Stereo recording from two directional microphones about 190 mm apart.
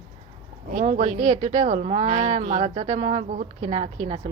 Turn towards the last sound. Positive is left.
turn(degrees=-35)  # may be behind; listen again after turning